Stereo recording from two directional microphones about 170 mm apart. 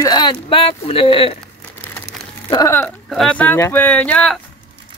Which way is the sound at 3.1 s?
5° left (ahead or behind).